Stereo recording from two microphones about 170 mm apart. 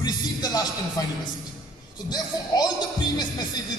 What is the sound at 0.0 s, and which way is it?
Music, 25° left (ahead or behind).